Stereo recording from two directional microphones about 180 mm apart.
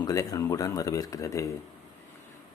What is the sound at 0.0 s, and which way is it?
Speech, 20° left (ahead or behind).